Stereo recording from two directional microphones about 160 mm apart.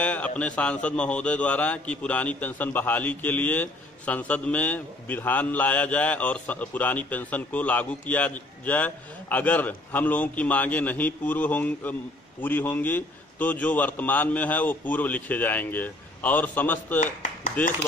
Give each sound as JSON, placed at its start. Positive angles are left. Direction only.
{"t": 0.0, "sound": "a man's voice", "side_deg": 10}
{"t": 17.0, "sound": "speech", "side_deg": 50}